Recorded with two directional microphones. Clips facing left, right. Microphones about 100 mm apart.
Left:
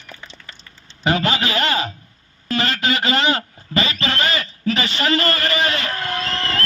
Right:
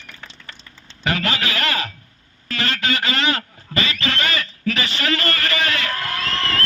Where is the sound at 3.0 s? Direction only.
35° left (ahead or behind).